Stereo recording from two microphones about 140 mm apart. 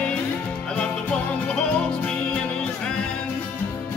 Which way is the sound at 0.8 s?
10° left (ahead or behind).